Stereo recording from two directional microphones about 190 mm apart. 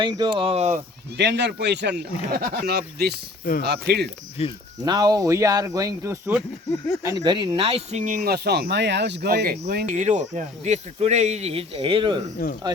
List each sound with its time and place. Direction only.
0.0 s speech: 20° right (ahead or behind)
1.1 s speech: 65° right (ahead or behind)
4.4 s speech: 30° left (ahead or behind)
4.9 s speech: 20° right (ahead or behind)
6.7 s speech: 15° left (ahead or behind)
7.0 s speech: 20° right (ahead or behind); by 9.9 s 55° right (ahead or behind)
9.9 s speech: 40° right (ahead or behind)
12.4 s speech: 50° left (ahead or behind)